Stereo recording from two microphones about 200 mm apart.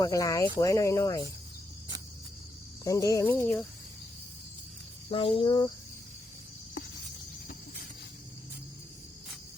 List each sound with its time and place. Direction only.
0.0 s speech: 15° left (ahead or behind)
2.8 s speech: 15° left (ahead or behind)
5.1 s speech: 25° left (ahead or behind)